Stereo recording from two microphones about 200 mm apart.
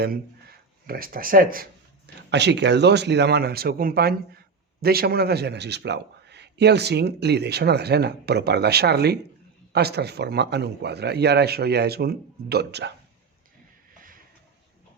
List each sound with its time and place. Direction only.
0.9 s speech: 45° right (ahead or behind)
2.3 s a man's voice: 60° right (ahead or behind)